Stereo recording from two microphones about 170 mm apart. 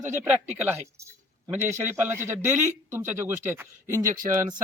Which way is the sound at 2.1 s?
15° right (ahead or behind).